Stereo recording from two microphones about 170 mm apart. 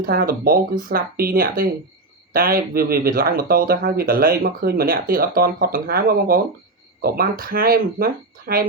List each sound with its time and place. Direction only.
0.0 s speech: 60° right (ahead or behind)